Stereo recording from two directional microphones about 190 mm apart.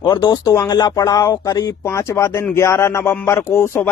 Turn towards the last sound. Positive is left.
turn(degrees=15)  # may be behind; listen again after turning